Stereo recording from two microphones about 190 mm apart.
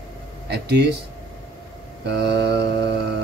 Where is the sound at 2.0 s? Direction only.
65° right (ahead or behind).